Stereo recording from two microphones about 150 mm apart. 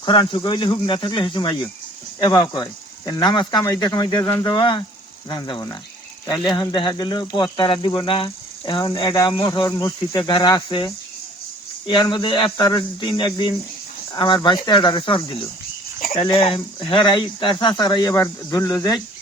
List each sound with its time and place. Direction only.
0.0 s speech: 30° left (ahead or behind)